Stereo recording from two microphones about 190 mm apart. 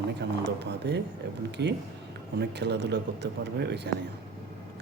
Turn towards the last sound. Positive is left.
turn(degrees=-60)  # may be behind; listen again after turning